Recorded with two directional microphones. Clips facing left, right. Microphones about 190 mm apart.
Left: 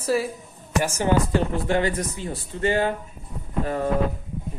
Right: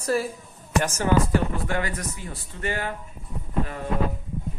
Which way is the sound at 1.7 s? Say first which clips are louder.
Left 6 dB; 25° left (ahead or behind).